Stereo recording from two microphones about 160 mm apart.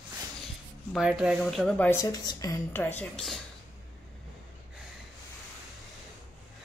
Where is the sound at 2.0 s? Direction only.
20° left (ahead or behind); by 3.3 s 5° left (ahead or behind).